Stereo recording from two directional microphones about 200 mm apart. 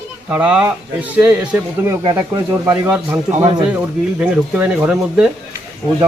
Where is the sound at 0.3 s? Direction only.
5° right (ahead or behind).